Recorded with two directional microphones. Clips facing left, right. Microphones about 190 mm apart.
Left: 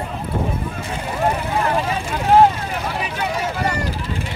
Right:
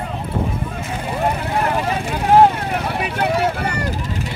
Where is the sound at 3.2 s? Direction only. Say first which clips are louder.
Right 7 dB; 60° right (ahead or behind).